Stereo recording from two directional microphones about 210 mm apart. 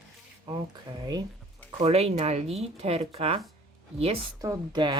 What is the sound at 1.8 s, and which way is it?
Speech, 30° right (ahead or behind).